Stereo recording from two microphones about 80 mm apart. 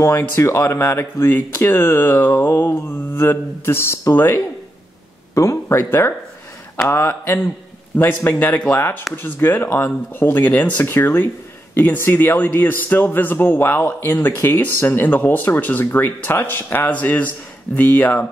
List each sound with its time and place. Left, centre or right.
0.4 s a man's voice: left